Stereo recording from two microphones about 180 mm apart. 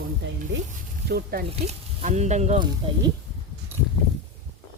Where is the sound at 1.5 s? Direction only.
40° right (ahead or behind).